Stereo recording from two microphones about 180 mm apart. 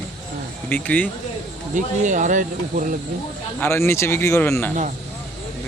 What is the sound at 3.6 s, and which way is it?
Speech, 15° left (ahead or behind).